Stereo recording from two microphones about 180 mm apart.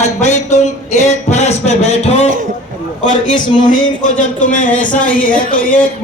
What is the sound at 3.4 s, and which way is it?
Speech, 25° left (ahead or behind).